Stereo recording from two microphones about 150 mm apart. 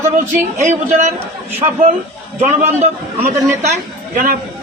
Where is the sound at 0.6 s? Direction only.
50° right (ahead or behind).